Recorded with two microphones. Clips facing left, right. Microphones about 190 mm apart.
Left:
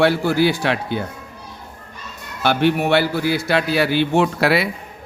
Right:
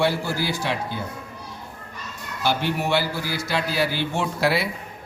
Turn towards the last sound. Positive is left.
turn(degrees=70)  # may be behind; listen again after turning